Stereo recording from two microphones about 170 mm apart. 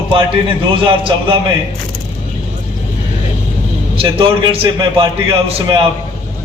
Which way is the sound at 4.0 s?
30° right (ahead or behind).